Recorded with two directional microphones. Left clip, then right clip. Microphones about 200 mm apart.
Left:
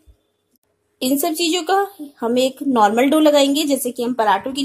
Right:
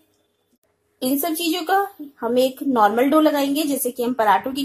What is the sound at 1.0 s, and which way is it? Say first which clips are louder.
A woman's voice: left 3 dB; 20° left (ahead or behind).